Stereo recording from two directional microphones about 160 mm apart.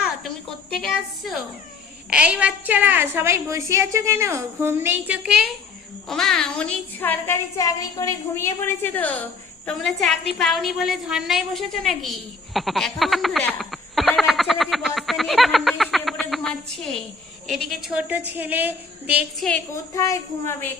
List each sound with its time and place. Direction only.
0.8 s a woman's voice: centre (ahead or behind)
13.5 s frog: centre (ahead or behind)
17.5 s a woman's voice: centre (ahead or behind)
19.7 s a woman's voice: 20° left (ahead or behind)